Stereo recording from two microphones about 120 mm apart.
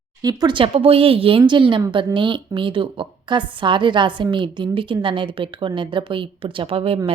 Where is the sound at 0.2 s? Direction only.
30° right (ahead or behind).